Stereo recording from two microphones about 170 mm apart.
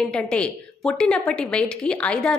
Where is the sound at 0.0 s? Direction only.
5° left (ahead or behind).